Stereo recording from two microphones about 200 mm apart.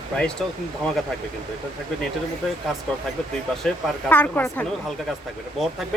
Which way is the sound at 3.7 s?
10° left (ahead or behind).